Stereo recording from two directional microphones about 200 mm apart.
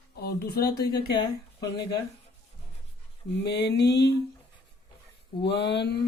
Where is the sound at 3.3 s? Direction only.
60° left (ahead or behind).